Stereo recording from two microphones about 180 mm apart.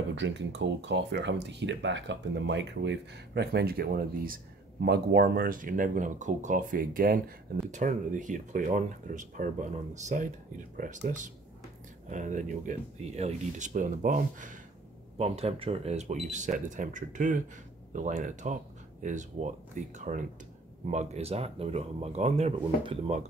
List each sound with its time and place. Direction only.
0.1 s speech: 85° right; by 14.6 s 45° right (ahead or behind)
15.1 s speech: 35° right (ahead or behind)